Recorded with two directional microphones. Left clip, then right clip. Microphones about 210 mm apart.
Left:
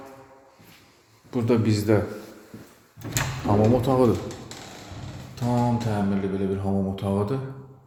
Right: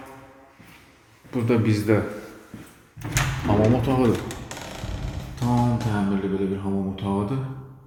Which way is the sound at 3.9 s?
15° left (ahead or behind).